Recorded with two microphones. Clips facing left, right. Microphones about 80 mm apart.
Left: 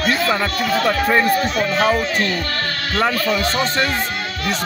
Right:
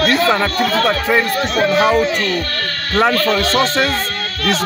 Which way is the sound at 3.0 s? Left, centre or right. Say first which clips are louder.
Right 3 dB; centre.